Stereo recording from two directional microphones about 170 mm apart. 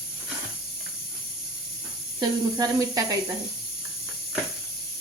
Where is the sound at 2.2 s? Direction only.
20° right (ahead or behind).